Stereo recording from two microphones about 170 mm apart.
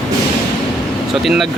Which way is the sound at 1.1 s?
Centre (ahead or behind).